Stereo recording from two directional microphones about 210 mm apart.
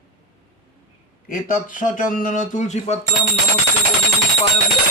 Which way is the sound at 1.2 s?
40° left (ahead or behind).